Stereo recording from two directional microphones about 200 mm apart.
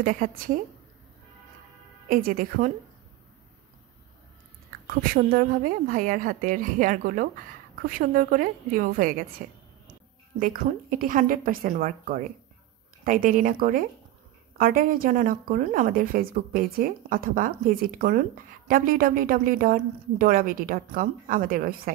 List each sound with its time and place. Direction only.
0.0 s a woman's voice: 45° right (ahead or behind)
2.0 s a woman's voice: 45° right (ahead or behind)
4.8 s a woman's voice: 45° right (ahead or behind)